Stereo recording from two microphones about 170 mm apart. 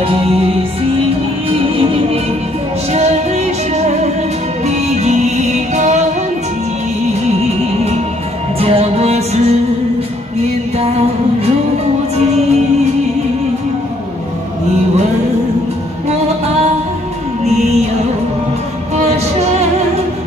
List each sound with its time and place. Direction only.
0.0 s music: 35° right (ahead or behind)
1.5 s music: 35° right (ahead or behind)
7.2 s music: 40° right (ahead or behind)